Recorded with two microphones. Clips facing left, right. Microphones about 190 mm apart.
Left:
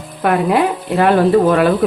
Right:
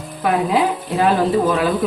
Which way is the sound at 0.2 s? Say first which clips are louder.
Left 3 dB; 60° left (ahead or behind).